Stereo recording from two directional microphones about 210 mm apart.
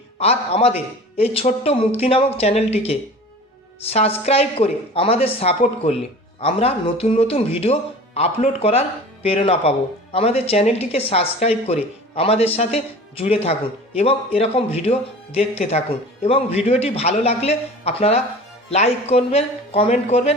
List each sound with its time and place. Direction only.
0.2 s speech: 30° left (ahead or behind)